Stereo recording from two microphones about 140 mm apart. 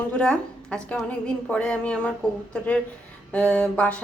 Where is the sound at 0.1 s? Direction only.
5° left (ahead or behind).